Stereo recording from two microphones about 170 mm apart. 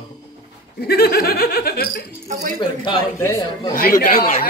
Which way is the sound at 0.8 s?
65° left (ahead or behind).